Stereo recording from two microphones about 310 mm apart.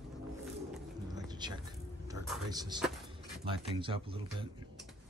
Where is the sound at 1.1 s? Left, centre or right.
Centre.